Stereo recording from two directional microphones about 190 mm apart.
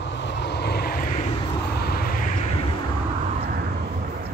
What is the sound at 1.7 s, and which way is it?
Vehicle, 55° left (ahead or behind).